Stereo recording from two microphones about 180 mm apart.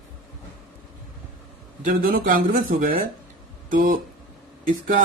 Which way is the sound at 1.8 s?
50° right (ahead or behind).